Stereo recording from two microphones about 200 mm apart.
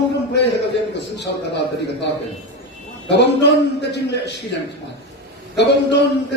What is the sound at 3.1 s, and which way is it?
Speech, 60° left (ahead or behind).